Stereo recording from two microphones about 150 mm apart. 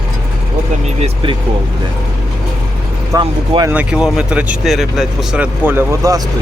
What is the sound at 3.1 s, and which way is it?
Speech, 25° right (ahead or behind).